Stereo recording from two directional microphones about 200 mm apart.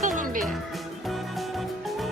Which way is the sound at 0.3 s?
Centre (ahead or behind).